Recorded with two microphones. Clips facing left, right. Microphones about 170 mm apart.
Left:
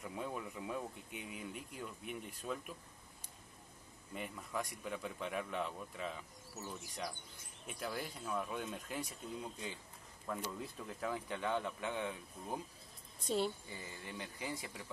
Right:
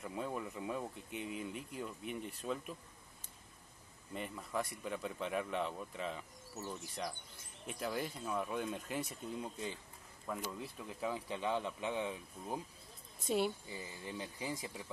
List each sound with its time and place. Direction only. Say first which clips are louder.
0.0 s speech: right 2 dB; centre (ahead or behind)
4.1 s speech: right 2 dB; centre (ahead or behind)
11.2 s speech: even; 25° right (ahead or behind)
13.2 s speech: right 2 dB; 5° right (ahead or behind)
14.0 s speech: right 2 dB; 15° right (ahead or behind)